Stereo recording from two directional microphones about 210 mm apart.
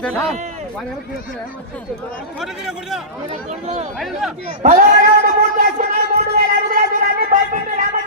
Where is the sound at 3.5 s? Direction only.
30° right (ahead or behind).